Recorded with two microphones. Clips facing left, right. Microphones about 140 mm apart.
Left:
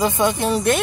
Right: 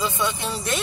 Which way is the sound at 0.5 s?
55° left (ahead or behind).